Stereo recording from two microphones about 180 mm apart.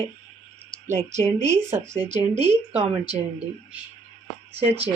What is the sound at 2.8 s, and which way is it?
Speech, 35° right (ahead or behind).